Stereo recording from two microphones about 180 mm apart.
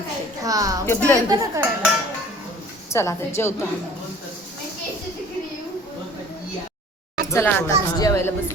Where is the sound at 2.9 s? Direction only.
15° left (ahead or behind).